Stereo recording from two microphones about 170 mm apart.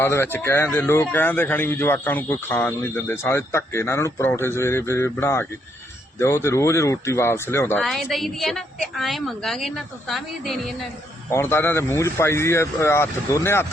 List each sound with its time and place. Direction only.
0.0 s speech: 15° left (ahead or behind)
7.8 s a woman's voice: centre (ahead or behind)
11.3 s speech: 15° left (ahead or behind)